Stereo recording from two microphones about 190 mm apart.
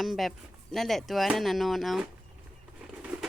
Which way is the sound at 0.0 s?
Centre (ahead or behind).